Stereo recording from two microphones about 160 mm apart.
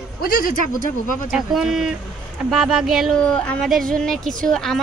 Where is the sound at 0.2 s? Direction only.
60° left (ahead or behind).